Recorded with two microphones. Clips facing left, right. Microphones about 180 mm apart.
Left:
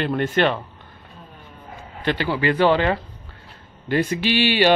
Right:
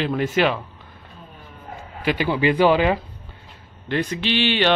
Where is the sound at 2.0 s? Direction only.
10° right (ahead or behind).